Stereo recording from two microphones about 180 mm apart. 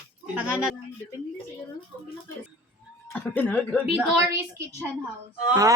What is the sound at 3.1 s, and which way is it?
Speech, 10° left (ahead or behind).